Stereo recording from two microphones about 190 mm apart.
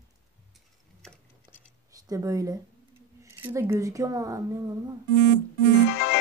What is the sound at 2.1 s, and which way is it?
Speech, 15° right (ahead or behind).